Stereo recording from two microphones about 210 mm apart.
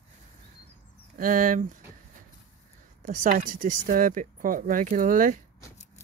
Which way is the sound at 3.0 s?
40° right (ahead or behind).